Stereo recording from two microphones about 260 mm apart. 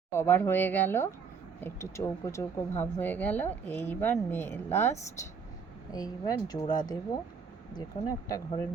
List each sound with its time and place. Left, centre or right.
0.1 s speech: centre